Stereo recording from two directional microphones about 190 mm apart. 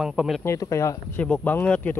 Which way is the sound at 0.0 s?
Centre (ahead or behind).